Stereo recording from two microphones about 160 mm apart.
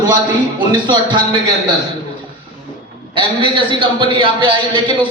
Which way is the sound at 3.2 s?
30° right (ahead or behind).